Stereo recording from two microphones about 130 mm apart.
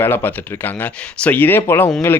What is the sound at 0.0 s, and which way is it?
Speech, 15° left (ahead or behind).